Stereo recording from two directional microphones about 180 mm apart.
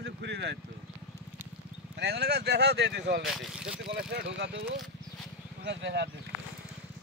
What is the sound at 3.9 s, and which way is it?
Speech, 70° right (ahead or behind).